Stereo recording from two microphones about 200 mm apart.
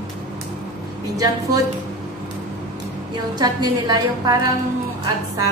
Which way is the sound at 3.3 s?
20° right (ahead or behind).